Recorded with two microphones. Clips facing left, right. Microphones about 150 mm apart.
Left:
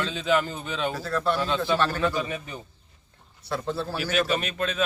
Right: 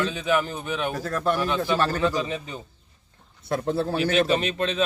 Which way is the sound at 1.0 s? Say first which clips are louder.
Right 1 dB; 45° right (ahead or behind).